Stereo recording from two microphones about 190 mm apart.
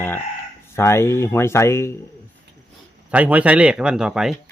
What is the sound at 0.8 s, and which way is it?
Speech, 15° left (ahead or behind).